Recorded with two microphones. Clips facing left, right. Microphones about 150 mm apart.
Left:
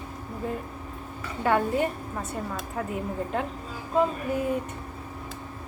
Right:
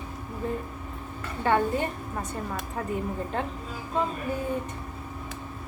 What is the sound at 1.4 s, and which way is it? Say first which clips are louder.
Speech: left 1 dB; 5° left (ahead or behind).